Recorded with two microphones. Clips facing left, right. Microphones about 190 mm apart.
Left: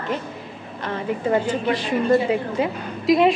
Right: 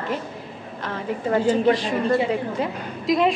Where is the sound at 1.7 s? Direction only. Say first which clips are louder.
Left 2 dB; 5° left (ahead or behind).